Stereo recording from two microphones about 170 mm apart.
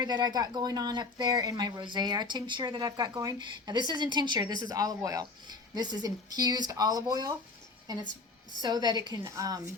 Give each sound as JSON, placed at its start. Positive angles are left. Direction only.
{"t": 0.0, "sound": "speech", "side_deg": -25}
{"t": 8.6, "sound": "speech", "side_deg": -25}